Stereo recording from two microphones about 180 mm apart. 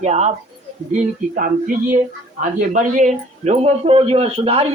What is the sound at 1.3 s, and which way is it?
Speech, 50° right (ahead or behind).